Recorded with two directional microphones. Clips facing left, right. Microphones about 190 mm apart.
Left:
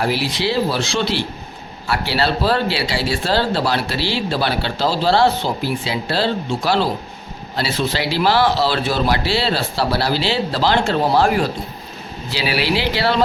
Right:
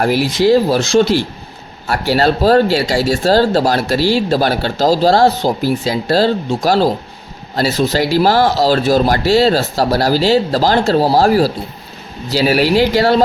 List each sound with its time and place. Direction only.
0.0 s speech: 45° right (ahead or behind)